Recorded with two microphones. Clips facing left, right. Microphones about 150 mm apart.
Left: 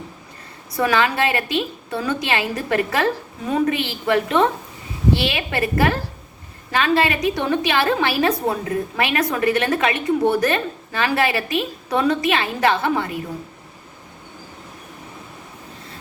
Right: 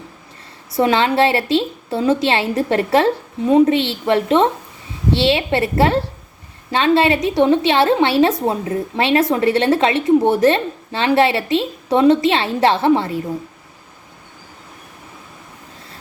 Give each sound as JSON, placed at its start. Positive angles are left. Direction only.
{"t": 0.8, "sound": "a woman's voice", "side_deg": -25}